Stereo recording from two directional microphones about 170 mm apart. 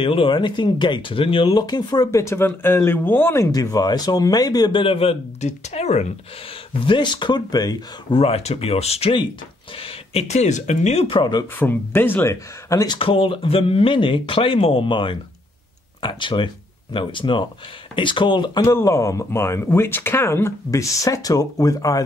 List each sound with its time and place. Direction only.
0.0 s speech: 30° left (ahead or behind)
6.9 s speech: 25° left (ahead or behind)
8.2 s speech: 35° left (ahead or behind)
11.5 s speech: 10° left (ahead or behind)